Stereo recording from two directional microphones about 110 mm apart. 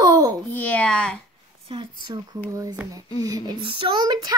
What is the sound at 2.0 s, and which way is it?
A child's voice, 40° right (ahead or behind).